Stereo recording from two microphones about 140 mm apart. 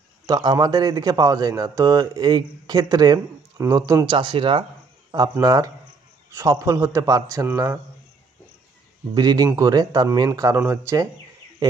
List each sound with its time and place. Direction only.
0.3 s a man's voice: 30° right (ahead or behind)
5.4 s a man's voice: 25° right (ahead or behind)
9.1 s a man's voice: 30° right (ahead or behind)